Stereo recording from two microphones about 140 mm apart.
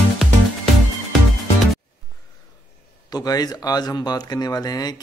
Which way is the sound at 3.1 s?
25° left (ahead or behind).